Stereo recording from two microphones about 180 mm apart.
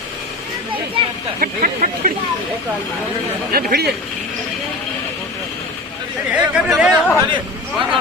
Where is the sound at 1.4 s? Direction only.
45° right (ahead or behind).